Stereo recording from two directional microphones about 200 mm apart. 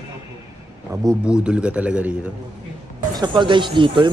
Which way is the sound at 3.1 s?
20° right (ahead or behind).